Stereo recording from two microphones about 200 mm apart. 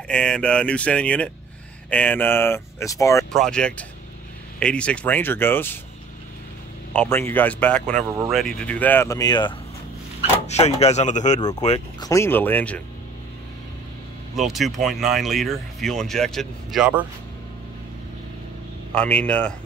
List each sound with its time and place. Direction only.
0.1 s speech: 5° left (ahead or behind)
3.3 s speech: 5° left (ahead or behind)
6.9 s speech: 10° left (ahead or behind)
10.4 s speech: 35° left (ahead or behind)
12.0 s speech: 15° left (ahead or behind)
14.3 s speech: centre (ahead or behind)
18.9 s speech: 5° left (ahead or behind)